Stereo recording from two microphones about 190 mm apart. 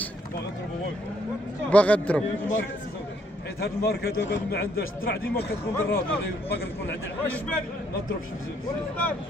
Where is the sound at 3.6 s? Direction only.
55° left (ahead or behind).